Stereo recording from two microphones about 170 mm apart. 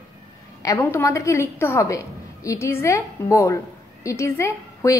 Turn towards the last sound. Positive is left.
turn(degrees=20)  # may be behind; listen again after turning